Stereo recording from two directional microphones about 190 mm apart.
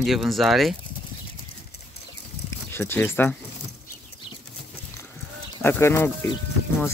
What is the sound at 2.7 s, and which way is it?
Speech, 10° left (ahead or behind).